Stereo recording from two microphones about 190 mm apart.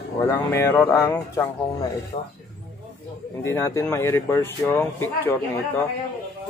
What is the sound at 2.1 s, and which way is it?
Speech, 40° left (ahead or behind).